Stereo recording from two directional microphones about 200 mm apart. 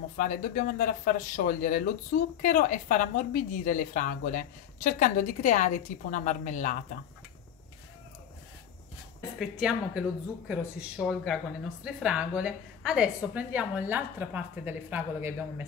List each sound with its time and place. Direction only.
0.2 s a woman's voice: 45° left (ahead or behind)
9.4 s a woman's voice: 5° right (ahead or behind)